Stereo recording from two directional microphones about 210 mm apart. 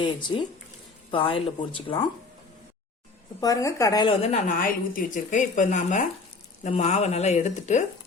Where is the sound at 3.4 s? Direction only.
15° left (ahead or behind); by 7.9 s 35° left (ahead or behind).